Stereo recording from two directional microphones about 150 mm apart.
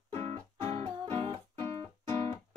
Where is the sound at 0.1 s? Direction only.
40° right (ahead or behind).